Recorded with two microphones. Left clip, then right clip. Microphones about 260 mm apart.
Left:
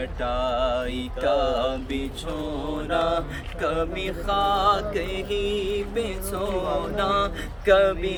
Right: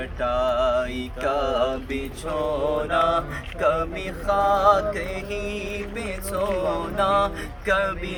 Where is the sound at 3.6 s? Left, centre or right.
Centre.